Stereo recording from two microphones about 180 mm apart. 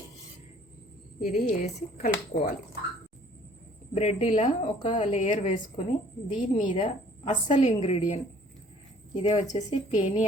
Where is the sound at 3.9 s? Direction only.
35° left (ahead or behind).